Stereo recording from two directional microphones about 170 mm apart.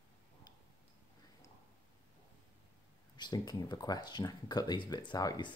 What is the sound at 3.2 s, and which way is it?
Speech, 25° left (ahead or behind).